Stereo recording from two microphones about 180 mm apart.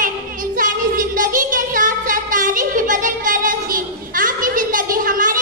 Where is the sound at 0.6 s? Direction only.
50° right (ahead or behind).